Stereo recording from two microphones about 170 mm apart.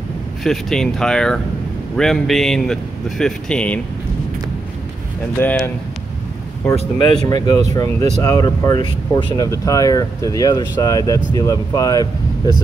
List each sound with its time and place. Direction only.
0.4 s speech: centre (ahead or behind)
5.4 s speech: 10° left (ahead or behind)
6.8 s speech: 30° left (ahead or behind)